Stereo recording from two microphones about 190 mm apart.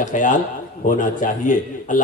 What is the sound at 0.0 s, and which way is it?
A man's voice, 40° left (ahead or behind).